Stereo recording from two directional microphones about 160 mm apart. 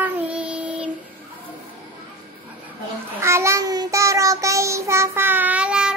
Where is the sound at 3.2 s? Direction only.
15° right (ahead or behind).